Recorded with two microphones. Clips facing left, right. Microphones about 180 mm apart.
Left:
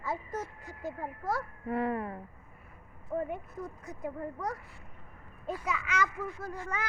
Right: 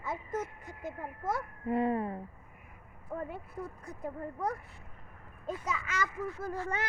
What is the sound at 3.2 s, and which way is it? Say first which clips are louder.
Speech: left 4 dB; 35° right (ahead or behind).